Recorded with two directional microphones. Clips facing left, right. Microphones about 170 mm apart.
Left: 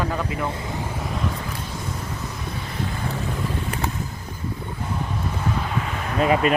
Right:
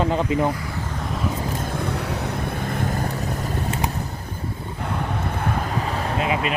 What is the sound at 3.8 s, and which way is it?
Vehicle, 15° right (ahead or behind).